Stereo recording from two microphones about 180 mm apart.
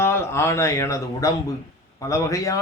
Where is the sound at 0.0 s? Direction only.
15° left (ahead or behind).